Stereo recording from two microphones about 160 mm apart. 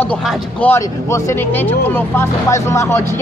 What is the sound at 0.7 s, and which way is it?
Speech, 20° left (ahead or behind).